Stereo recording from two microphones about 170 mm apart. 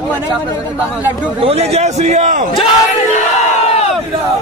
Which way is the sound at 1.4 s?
40° right (ahead or behind).